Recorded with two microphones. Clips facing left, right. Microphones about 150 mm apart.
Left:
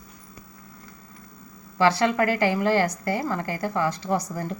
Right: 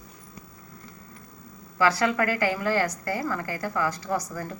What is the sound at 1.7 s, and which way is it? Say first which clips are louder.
A woman's voice: left 2 dB; 25° left (ahead or behind).